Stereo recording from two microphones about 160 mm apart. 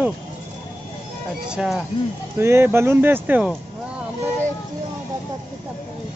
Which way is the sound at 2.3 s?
15° right (ahead or behind).